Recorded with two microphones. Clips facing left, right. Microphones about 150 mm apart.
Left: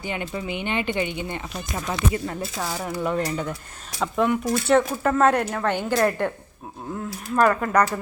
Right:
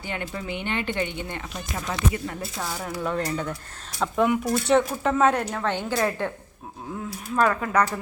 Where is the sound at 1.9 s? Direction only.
30° left (ahead or behind).